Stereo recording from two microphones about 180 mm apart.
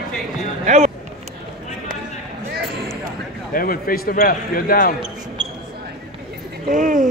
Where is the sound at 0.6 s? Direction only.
35° right (ahead or behind).